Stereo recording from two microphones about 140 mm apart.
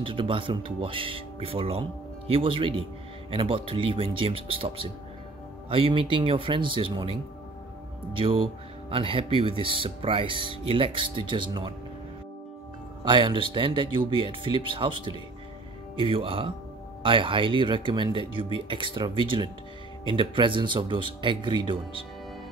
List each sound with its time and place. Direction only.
0.0 s speech: 40° right (ahead or behind)
13.0 s speech: 35° right (ahead or behind)